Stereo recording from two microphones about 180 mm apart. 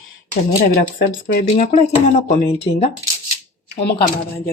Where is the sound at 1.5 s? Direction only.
35° left (ahead or behind).